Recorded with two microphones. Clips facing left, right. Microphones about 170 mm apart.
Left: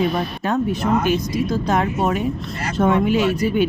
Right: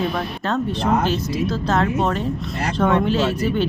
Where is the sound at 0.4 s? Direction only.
10° left (ahead or behind).